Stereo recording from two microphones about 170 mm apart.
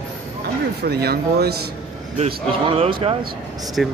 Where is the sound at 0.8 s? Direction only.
70° right (ahead or behind).